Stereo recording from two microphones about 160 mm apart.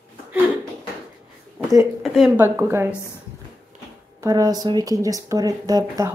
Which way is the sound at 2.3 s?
15° right (ahead or behind).